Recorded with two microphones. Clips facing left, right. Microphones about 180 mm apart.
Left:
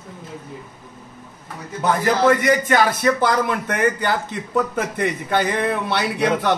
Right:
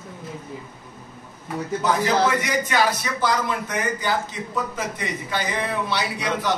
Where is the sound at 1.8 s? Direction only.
50° left (ahead or behind).